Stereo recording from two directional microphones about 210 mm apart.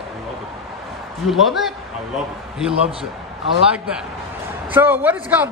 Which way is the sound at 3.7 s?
5° right (ahead or behind).